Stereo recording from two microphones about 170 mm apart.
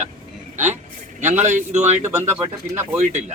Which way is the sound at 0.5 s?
45° right (ahead or behind).